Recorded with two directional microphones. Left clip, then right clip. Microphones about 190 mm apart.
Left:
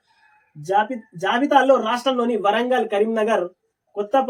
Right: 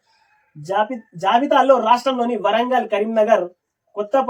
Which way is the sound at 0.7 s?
Centre (ahead or behind).